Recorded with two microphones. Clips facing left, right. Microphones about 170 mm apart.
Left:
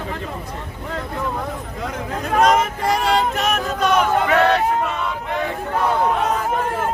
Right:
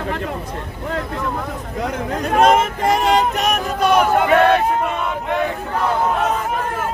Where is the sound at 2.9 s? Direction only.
20° right (ahead or behind).